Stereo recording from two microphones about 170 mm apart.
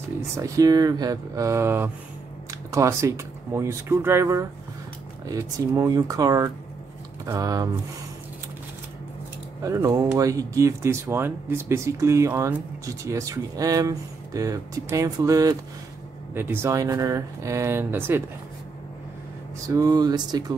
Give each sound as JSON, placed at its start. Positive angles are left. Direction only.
{"t": 0.4, "sound": "speech", "side_deg": -20}
{"t": 9.6, "sound": "speech", "side_deg": -20}
{"t": 19.7, "sound": "speech", "side_deg": -20}